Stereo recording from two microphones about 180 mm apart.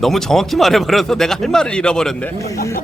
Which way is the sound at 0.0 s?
Centre (ahead or behind).